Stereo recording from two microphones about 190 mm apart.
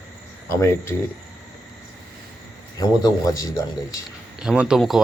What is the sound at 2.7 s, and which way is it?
Speech, 20° left (ahead or behind).